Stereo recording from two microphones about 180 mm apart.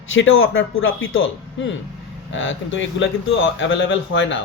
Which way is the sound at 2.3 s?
90° left.